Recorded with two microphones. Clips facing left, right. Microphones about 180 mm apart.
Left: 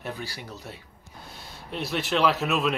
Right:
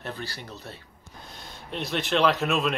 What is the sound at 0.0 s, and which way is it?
Speech, 10° left (ahead or behind).